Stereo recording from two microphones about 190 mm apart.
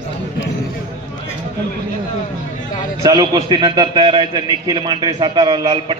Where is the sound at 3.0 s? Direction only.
20° right (ahead or behind).